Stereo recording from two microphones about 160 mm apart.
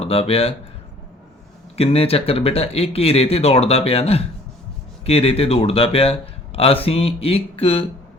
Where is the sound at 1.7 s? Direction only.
40° left (ahead or behind).